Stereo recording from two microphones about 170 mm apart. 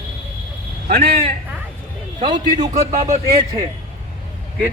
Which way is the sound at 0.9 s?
60° right (ahead or behind).